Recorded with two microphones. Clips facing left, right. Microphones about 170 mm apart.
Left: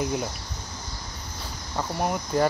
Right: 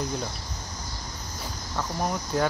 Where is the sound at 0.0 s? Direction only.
10° left (ahead or behind).